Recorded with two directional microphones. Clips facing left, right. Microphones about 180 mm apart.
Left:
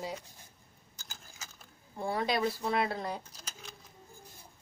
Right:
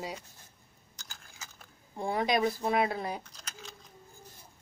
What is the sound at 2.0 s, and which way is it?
Speech, 15° right (ahead or behind).